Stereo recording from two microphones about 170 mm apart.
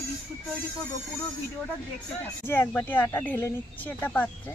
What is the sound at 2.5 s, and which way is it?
A woman's voice, 10° left (ahead or behind).